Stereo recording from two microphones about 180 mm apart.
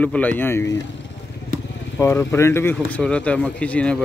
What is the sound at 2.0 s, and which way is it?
Speech, 15° left (ahead or behind).